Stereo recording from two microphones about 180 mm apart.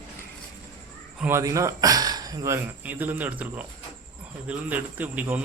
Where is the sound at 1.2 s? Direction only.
15° right (ahead or behind).